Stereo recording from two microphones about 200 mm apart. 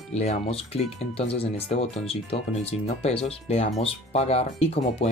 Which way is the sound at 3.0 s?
30° left (ahead or behind).